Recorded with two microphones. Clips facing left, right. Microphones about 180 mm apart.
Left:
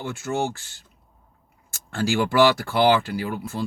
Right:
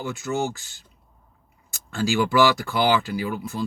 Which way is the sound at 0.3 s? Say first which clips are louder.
Even; 40° left (ahead or behind).